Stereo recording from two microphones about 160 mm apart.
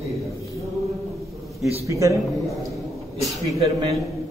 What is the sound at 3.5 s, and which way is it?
Speech, 20° right (ahead or behind).